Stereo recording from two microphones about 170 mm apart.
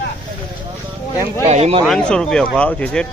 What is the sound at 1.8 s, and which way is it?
Speech, 5° left (ahead or behind).